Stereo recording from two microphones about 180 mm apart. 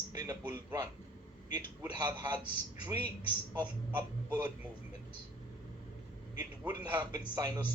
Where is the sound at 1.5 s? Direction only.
20° right (ahead or behind).